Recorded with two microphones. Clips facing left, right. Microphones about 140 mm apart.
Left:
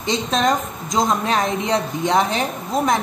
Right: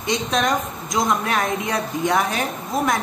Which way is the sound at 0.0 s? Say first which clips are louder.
Left 2 dB; 25° left (ahead or behind).